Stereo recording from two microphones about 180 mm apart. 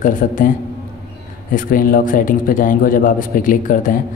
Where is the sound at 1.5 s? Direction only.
50° left (ahead or behind).